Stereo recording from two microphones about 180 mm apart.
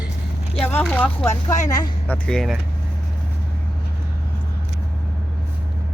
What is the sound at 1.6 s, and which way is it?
Speech, 20° left (ahead or behind).